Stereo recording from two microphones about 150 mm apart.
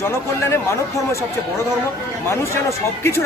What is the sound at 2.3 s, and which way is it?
Speech, 15° left (ahead or behind).